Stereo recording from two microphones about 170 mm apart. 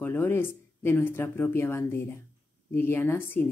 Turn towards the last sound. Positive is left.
turn(degrees=15)  # may be behind; listen again after turning